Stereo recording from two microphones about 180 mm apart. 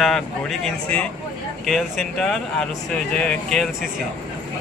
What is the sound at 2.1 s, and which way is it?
Speech, centre (ahead or behind).